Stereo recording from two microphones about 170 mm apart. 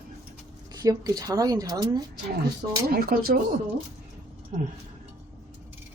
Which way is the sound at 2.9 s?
60° right (ahead or behind).